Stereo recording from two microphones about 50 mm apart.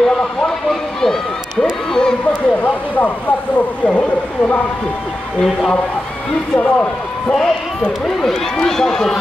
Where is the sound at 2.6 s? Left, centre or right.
Left.